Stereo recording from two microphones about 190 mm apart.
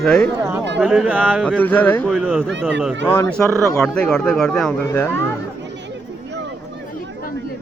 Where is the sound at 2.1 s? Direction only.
5° right (ahead or behind).